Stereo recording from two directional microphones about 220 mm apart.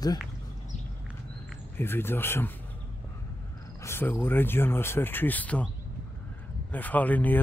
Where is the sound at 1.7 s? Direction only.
10° left (ahead or behind).